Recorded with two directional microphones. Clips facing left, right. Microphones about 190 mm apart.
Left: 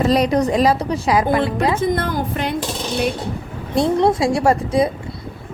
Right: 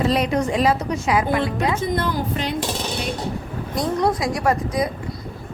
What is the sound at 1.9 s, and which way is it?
Speech, 50° left (ahead or behind).